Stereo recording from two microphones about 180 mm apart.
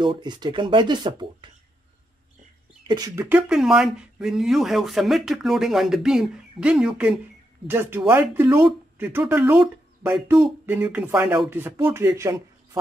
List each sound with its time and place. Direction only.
0.0 s speech: 25° right (ahead or behind)
2.9 s speech: 20° right (ahead or behind)
3.3 s speech: 5° right (ahead or behind)